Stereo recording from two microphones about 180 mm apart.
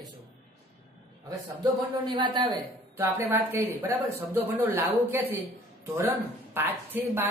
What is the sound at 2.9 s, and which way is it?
Speech, 10° right (ahead or behind).